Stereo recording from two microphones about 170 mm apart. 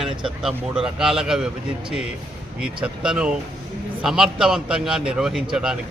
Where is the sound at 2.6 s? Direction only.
5° right (ahead or behind).